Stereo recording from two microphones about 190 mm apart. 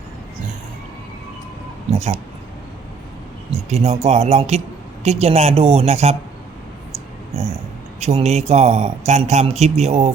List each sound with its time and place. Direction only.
1.9 s speech: 35° right (ahead or behind)
3.7 s speech: 35° right (ahead or behind)
6.9 s a sound: 35° right (ahead or behind)
7.9 s speech: 35° right (ahead or behind)